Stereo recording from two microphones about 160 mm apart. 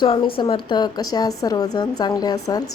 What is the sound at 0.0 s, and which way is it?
A woman's voice, 30° left (ahead or behind).